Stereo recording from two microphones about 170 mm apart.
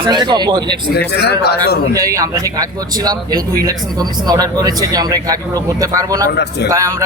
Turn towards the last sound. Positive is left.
turn(degrees=-20)  # may be behind; listen again after turning